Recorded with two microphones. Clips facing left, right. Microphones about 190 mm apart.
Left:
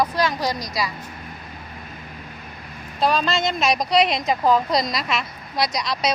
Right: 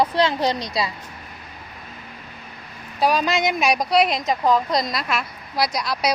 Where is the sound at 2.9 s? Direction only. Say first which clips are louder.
Right 1 dB; 10° right (ahead or behind).